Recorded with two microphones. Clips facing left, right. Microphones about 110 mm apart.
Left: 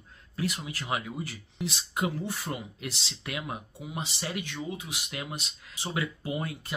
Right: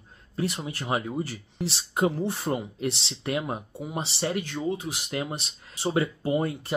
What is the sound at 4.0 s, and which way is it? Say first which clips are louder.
Speech: right 6 dB; 30° right (ahead or behind).